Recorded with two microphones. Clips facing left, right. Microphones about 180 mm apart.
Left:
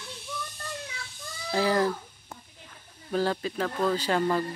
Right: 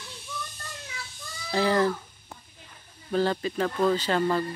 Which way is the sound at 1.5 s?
5° left (ahead or behind).